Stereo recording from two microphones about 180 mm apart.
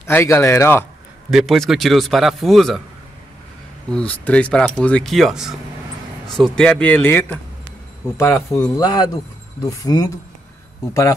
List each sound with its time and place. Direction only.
0.0 s speech: 15° left (ahead or behind)
1.3 s speech: centre (ahead or behind)
3.9 s speech: 5° left (ahead or behind)
8.7 s speech: 20° left (ahead or behind)